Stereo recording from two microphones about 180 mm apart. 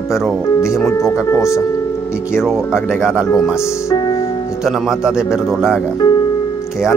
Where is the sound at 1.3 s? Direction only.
15° left (ahead or behind).